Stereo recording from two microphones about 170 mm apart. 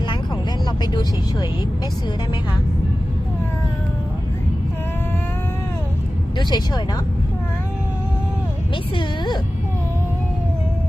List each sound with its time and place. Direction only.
0.8 s vehicle: 25° left (ahead or behind)
6.3 s speech: 25° left (ahead or behind)
8.7 s a woman's voice: 25° left (ahead or behind)